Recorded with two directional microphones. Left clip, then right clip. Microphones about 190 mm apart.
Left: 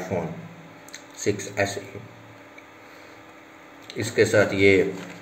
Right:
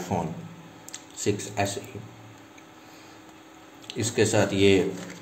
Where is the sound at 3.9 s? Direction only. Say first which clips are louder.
Left 3 dB; 30° right (ahead or behind).